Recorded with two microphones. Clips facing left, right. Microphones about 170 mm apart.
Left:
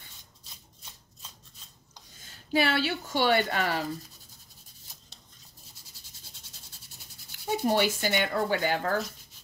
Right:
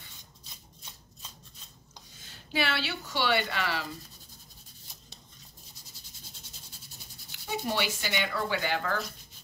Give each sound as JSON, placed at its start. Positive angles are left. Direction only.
{"t": 2.5, "sound": "speech", "side_deg": 45}
{"t": 7.6, "sound": "speech", "side_deg": 45}